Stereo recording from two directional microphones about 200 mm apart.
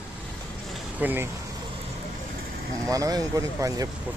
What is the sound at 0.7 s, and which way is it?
Vehicle, 10° right (ahead or behind).